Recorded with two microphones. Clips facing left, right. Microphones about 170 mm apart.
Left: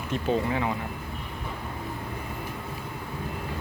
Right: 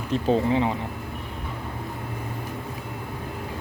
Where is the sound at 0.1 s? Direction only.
30° right (ahead or behind).